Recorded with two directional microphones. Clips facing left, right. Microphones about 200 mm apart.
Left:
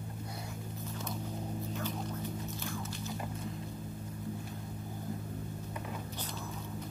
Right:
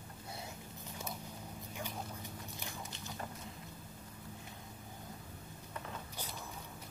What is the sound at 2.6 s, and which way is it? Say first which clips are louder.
Biting: left 8 dB; 15° right (ahead or behind).